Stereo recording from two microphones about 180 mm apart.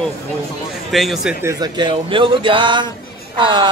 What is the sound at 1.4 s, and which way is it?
Speech, 20° right (ahead or behind).